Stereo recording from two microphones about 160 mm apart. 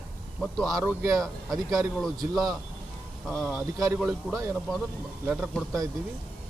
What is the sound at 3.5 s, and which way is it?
Speech, 15° right (ahead or behind).